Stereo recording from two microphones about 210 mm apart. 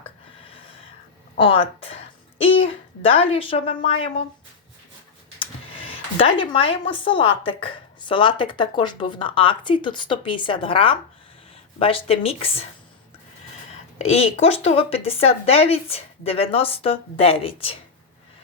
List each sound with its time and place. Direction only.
1.5 s a child's voice: 25° left (ahead or behind)
5.4 s speech: 25° left (ahead or behind)
14.0 s speech: 30° left (ahead or behind)